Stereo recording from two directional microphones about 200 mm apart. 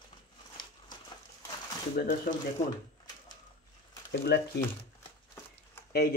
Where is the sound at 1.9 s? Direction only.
45° left (ahead or behind).